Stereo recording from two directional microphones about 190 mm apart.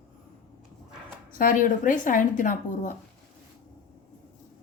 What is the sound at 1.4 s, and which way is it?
A woman's voice, 45° left (ahead or behind).